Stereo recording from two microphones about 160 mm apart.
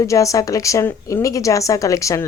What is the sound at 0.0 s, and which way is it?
Speech, 20° left (ahead or behind).